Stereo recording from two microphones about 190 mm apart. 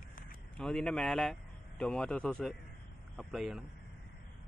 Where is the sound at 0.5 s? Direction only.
5° left (ahead or behind).